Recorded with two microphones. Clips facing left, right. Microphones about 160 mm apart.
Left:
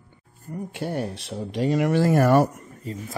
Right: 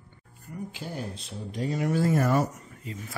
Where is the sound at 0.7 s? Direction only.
65° left (ahead or behind).